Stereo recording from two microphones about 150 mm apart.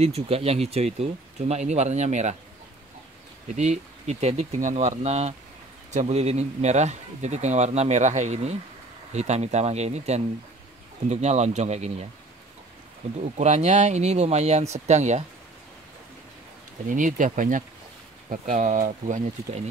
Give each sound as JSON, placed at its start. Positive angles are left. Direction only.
{"t": 0.0, "sound": "speech", "side_deg": -40}
{"t": 3.4, "sound": "speech", "side_deg": -50}
{"t": 13.2, "sound": "speech", "side_deg": -50}
{"t": 16.8, "sound": "speech", "side_deg": -60}